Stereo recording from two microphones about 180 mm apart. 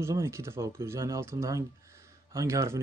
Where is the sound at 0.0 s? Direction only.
15° right (ahead or behind).